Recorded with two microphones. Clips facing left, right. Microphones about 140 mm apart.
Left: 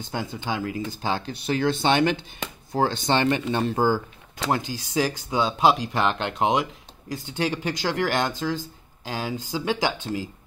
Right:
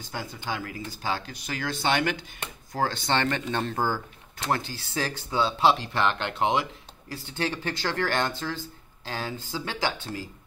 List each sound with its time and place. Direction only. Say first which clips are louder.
0.1 s speech: left 4 dB; 20° left (ahead or behind)